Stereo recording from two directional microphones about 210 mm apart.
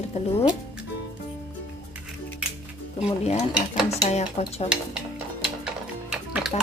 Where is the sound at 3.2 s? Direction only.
35° left (ahead or behind).